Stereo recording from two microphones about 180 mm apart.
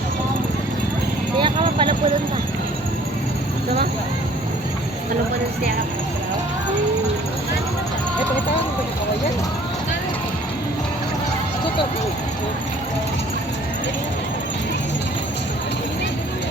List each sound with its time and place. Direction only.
1.4 s clip-clop: 30° right (ahead or behind)